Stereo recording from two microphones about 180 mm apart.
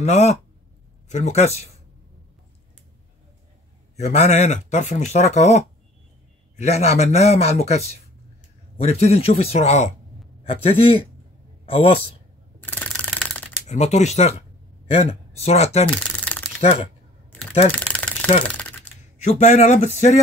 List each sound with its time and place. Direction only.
0.0 s speech: 40° left (ahead or behind)
3.9 s speech: 40° left (ahead or behind)
6.6 s a man's voice: 40° left (ahead or behind)
12.6 s ratchet: 10° left (ahead or behind)
13.7 s speech: 40° left (ahead or behind)
16.0 s a sound: 5° left (ahead or behind)
17.7 s a sound: 5° left (ahead or behind)
18.4 s typing: 5° left (ahead or behind)
19.2 s speech: 40° left (ahead or behind)